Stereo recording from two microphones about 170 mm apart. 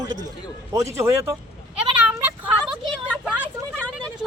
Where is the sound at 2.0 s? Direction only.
5° right (ahead or behind).